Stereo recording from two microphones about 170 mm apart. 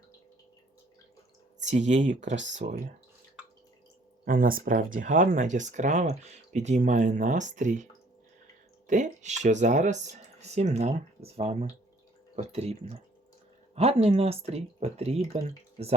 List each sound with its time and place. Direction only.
1.6 s speech: 45° right (ahead or behind)
4.3 s speech: 55° right (ahead or behind)
8.9 s speech: 45° right (ahead or behind)